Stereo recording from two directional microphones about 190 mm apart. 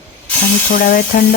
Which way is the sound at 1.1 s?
50° left (ahead or behind).